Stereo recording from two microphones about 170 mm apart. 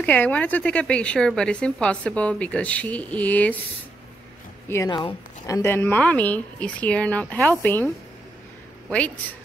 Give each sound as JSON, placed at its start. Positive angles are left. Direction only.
{"t": 0.0, "sound": "speech", "side_deg": 10}
{"t": 4.6, "sound": "speech", "side_deg": 15}